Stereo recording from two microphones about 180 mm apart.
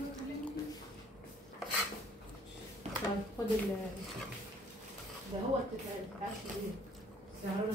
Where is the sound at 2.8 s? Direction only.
40° right (ahead or behind).